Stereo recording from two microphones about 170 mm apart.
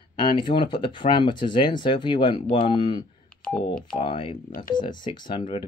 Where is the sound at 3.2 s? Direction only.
5° left (ahead or behind).